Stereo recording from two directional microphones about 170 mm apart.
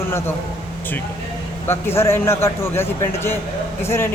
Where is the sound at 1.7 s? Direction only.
15° left (ahead or behind).